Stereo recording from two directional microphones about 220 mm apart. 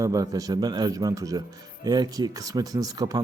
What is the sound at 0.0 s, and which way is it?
Speech, 15° right (ahead or behind).